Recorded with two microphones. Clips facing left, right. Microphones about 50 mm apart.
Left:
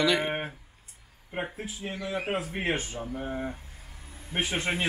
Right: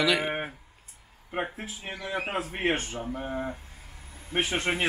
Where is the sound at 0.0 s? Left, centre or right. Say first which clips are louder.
Even; centre.